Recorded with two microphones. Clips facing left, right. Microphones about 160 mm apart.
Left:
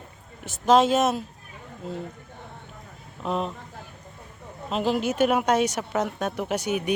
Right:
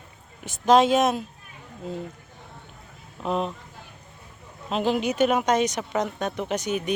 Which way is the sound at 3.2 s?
Centre (ahead or behind).